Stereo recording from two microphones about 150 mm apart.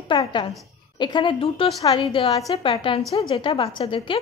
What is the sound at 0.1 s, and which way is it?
A woman's voice, 30° left (ahead or behind).